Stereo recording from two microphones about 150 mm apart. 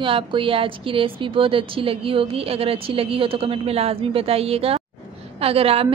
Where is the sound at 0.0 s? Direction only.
35° right (ahead or behind).